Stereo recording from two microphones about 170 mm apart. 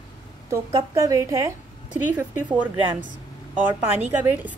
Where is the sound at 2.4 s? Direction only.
10° right (ahead or behind).